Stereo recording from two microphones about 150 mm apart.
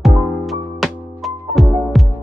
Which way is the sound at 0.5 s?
Centre (ahead or behind).